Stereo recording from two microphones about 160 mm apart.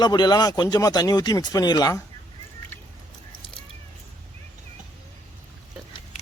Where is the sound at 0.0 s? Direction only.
25° left (ahead or behind).